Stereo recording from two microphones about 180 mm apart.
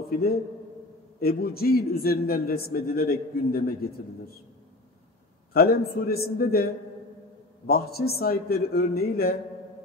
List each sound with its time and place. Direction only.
0.1 s a man's voice: 60° left (ahead or behind)
5.5 s a man's voice: 55° left (ahead or behind)